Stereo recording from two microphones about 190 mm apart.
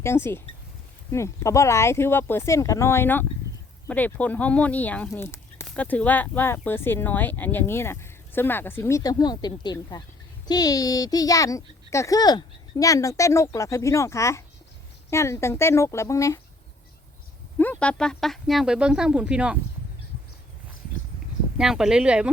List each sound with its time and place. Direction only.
0.0 s speech: 15° left (ahead or behind)
17.6 s speech: 10° left (ahead or behind)
21.6 s speech: 5° right (ahead or behind)